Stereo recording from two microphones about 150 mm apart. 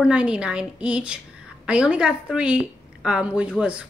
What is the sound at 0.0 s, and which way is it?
A woman's voice, 5° right (ahead or behind).